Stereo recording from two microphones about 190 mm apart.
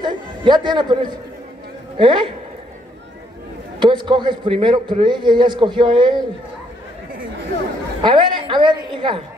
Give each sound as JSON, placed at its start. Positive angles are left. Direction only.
{"t": 0.0, "sound": "a man's voice", "side_deg": -25}
{"t": 3.8, "sound": "a man's voice", "side_deg": -25}
{"t": 8.0, "sound": "a man's voice", "side_deg": -25}